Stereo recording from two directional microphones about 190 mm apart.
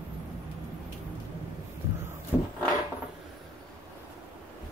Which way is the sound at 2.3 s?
10° right (ahead or behind).